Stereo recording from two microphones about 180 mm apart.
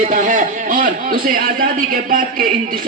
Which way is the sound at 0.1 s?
45° right (ahead or behind).